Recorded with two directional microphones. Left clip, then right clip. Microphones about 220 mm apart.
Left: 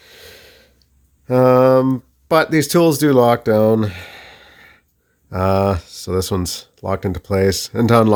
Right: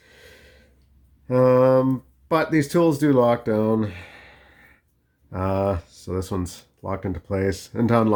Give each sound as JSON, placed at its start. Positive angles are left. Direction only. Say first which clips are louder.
{"t": 0.0, "sound": "snort", "louder": "left 8 dB", "side_deg": 45}
{"t": 1.3, "sound": "speech", "louder": "left 5 dB", "side_deg": 45}